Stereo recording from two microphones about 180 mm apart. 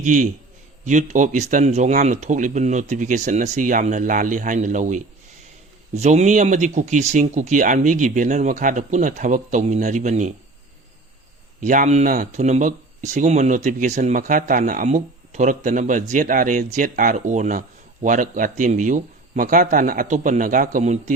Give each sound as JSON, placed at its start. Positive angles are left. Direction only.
{"t": 0.0, "sound": "speech", "side_deg": -45}
{"t": 11.6, "sound": "speech", "side_deg": -45}